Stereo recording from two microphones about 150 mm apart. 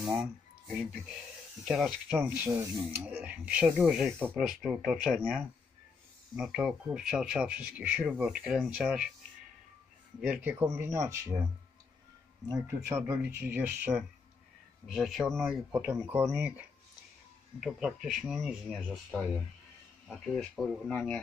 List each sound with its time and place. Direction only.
0.0 s speech: 5° right (ahead or behind)
10.2 s speech: 10° right (ahead or behind)
12.9 s speech: 15° right (ahead or behind)
14.9 s speech: centre (ahead or behind)
20.1 s speech: centre (ahead or behind)